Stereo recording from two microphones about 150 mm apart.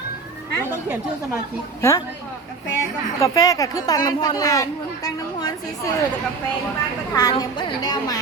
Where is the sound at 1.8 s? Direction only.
20° left (ahead or behind).